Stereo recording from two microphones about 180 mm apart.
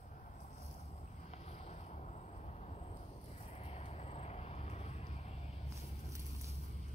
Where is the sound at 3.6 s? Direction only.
35° left (ahead or behind).